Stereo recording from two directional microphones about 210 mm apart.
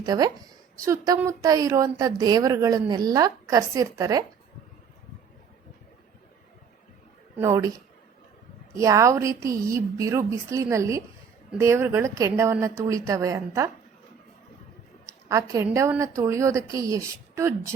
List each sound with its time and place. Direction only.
0.0 s a woman's voice: 20° right (ahead or behind)
7.3 s a woman's voice: 15° right (ahead or behind)
8.7 s a woman's voice: 15° right (ahead or behind)
15.0 s a woman's voice: 15° right (ahead or behind)